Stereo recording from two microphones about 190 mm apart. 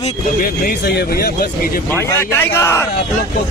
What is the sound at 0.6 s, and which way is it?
Speech, 55° left (ahead or behind).